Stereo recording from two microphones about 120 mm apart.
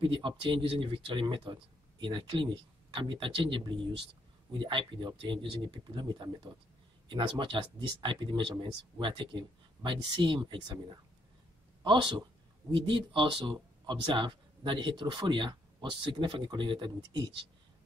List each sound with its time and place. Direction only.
0.0 s speech: 45° right (ahead or behind)